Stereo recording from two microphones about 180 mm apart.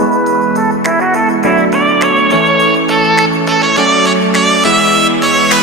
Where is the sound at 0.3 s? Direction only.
Centre (ahead or behind).